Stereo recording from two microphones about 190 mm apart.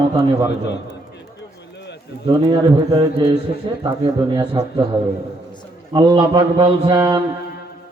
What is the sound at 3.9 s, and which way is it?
Speech, 20° right (ahead or behind).